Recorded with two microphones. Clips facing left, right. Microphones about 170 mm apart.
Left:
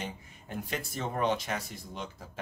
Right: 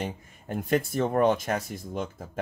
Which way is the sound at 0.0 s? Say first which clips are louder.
Right 6 dB; 50° right (ahead or behind).